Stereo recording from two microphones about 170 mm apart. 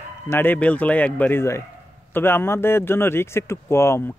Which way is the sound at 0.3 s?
10° left (ahead or behind).